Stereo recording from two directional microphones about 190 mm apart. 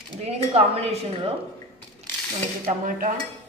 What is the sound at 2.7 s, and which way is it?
Speech, 45° right (ahead or behind).